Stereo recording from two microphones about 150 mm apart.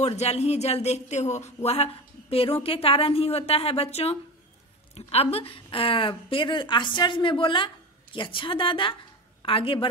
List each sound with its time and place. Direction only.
0.0 s a woman's voice: 45° left (ahead or behind)